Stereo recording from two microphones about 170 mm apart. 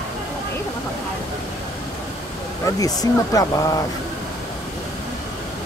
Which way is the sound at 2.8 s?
20° left (ahead or behind).